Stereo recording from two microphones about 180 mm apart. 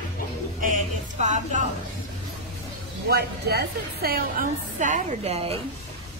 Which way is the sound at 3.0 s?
65° right (ahead or behind).